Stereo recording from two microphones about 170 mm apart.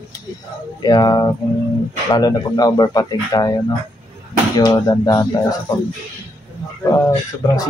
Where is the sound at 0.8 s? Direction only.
25° left (ahead or behind).